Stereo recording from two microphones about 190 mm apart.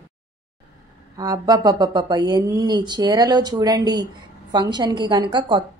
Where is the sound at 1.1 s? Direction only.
20° right (ahead or behind).